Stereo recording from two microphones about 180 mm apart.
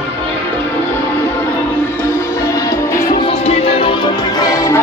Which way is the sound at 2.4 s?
15° left (ahead or behind).